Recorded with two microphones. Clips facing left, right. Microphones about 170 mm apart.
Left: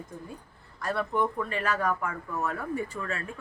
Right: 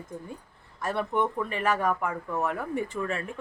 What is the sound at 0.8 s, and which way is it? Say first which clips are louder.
Speech: right 1 dB; 20° right (ahead or behind).